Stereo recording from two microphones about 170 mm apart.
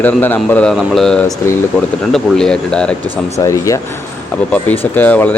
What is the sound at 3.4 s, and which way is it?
Speech, 20° left (ahead or behind).